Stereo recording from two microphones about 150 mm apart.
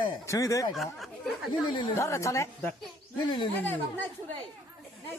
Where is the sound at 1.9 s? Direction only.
20° left (ahead or behind).